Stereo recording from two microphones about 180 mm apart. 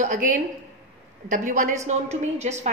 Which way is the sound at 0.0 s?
45° right (ahead or behind).